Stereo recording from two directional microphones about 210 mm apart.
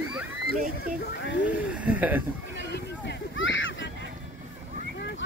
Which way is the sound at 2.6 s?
55° left (ahead or behind).